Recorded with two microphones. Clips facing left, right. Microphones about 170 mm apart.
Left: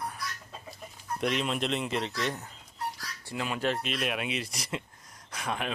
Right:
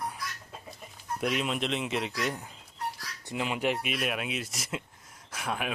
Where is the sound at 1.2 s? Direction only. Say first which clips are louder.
Even; 5° right (ahead or behind).